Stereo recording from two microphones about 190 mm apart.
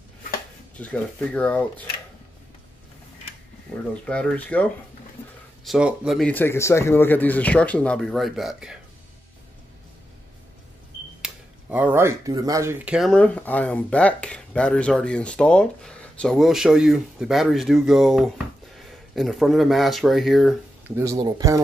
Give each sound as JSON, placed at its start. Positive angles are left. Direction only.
{"t": 0.7, "sound": "speech", "side_deg": 5}
{"t": 3.9, "sound": "speech", "side_deg": 5}
{"t": 11.2, "sound": "speech", "side_deg": -10}
{"t": 20.9, "sound": "speech", "side_deg": -15}